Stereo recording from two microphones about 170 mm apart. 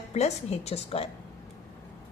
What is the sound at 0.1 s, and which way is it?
A woman's voice, 40° left (ahead or behind).